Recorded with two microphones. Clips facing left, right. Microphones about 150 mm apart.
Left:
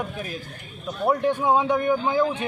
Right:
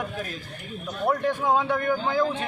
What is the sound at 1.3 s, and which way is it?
Speech, 15° left (ahead or behind).